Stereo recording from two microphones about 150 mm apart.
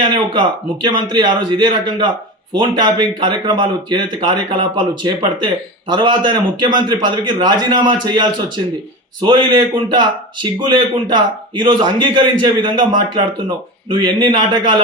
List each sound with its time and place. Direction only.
0.3 s a man's voice: 30° right (ahead or behind)